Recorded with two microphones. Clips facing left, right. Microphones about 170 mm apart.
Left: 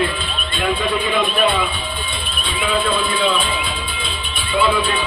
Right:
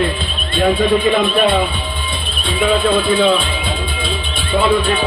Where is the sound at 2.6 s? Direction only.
50° right (ahead or behind).